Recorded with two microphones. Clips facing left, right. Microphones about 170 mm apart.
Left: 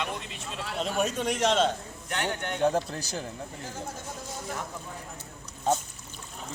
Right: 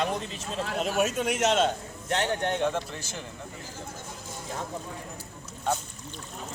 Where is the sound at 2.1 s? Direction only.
35° right (ahead or behind).